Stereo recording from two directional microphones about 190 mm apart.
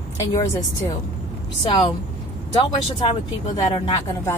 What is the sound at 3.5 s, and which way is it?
Speech, 20° left (ahead or behind).